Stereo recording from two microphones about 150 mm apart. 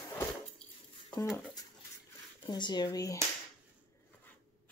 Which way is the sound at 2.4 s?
30° left (ahead or behind).